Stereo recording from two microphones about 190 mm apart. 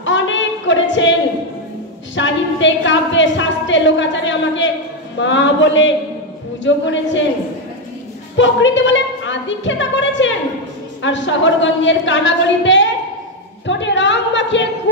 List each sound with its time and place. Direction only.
0.0 s a sound: 80° left
2.1 s a woman's voice: 75° left (ahead or behind)
8.4 s a woman's voice: 75° left (ahead or behind)